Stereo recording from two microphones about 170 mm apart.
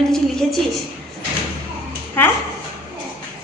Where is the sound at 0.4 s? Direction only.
5° left (ahead or behind).